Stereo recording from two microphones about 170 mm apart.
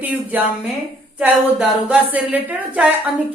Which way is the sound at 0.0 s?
10° right (ahead or behind).